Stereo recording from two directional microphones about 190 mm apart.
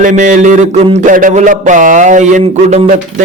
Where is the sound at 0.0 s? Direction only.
40° right (ahead or behind).